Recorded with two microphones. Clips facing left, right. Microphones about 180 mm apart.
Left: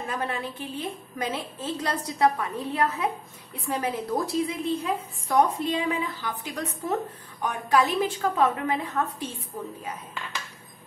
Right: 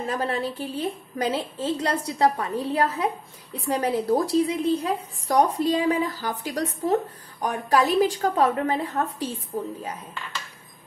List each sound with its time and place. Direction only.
0.1 s a woman's voice: 35° right (ahead or behind)